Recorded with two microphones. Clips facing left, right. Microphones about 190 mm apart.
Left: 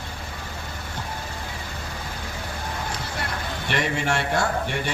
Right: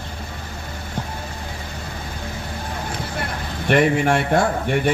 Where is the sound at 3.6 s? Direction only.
55° right (ahead or behind).